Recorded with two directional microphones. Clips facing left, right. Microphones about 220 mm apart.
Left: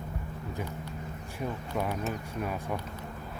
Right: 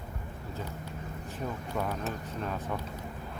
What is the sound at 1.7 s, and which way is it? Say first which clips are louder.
Speech: left 2 dB; 10° left (ahead or behind).